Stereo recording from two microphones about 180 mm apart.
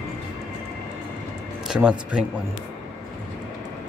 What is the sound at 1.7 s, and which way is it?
Speech, 5° right (ahead or behind).